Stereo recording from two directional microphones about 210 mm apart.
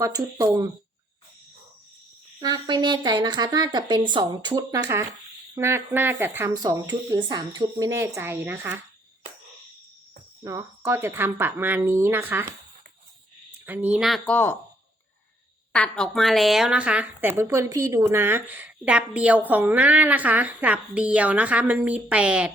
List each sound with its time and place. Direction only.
0.0 s a woman's voice: 15° right (ahead or behind)
2.4 s a woman's voice: 20° right (ahead or behind)
10.4 s a woman's voice: 15° right (ahead or behind)
13.7 s speech: 5° right (ahead or behind)
15.7 s a woman's voice: 5° left (ahead or behind)